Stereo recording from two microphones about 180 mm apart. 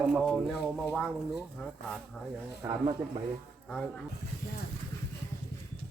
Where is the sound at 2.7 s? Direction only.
30° right (ahead or behind).